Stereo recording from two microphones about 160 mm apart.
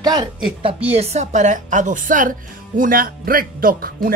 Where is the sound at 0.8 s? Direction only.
40° right (ahead or behind).